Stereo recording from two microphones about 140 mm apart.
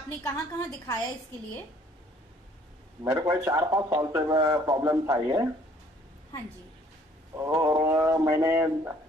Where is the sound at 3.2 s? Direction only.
20° right (ahead or behind).